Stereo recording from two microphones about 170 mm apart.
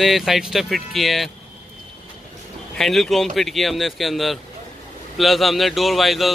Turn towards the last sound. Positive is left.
turn(degrees=0)  # may be behind; listen again after turning